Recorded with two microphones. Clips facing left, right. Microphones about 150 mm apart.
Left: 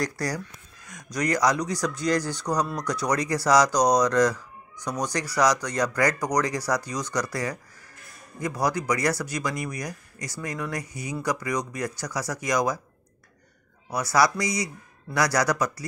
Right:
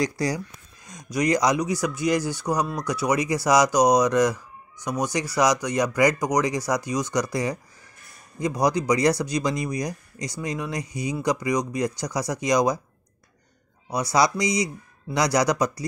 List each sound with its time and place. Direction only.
0.0 s speech: 15° right (ahead or behind)
13.8 s speech: 15° right (ahead or behind)